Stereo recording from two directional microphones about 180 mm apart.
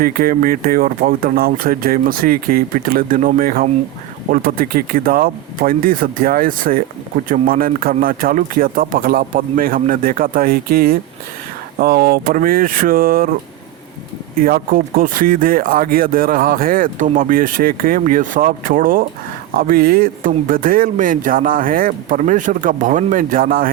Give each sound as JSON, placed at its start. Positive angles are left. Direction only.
{"t": 0.0, "sound": "speech", "side_deg": -55}
{"t": 14.3, "sound": "speech", "side_deg": -55}